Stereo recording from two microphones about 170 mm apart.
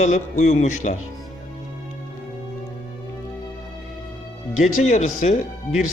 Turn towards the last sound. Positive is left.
turn(degrees=45)  # may be behind; listen again after turning